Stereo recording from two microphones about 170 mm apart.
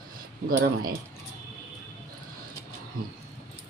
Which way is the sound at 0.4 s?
60° right (ahead or behind).